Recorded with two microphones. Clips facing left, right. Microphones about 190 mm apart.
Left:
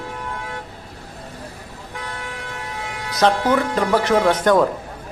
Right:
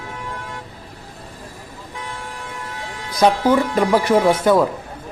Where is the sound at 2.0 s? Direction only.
70° left (ahead or behind).